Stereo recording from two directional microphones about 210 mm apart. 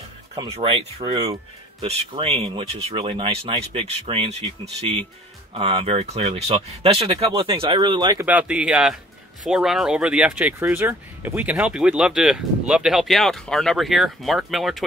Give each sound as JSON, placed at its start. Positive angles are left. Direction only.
{"t": 0.3, "sound": "speech", "side_deg": -30}
{"t": 1.9, "sound": "speech", "side_deg": -30}
{"t": 8.3, "sound": "speech", "side_deg": -5}